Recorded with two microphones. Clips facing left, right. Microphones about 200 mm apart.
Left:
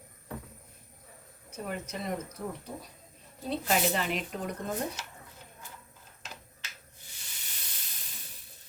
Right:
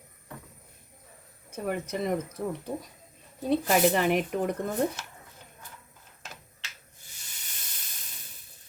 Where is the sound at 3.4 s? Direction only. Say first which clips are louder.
Right 6 dB; 55° right (ahead or behind).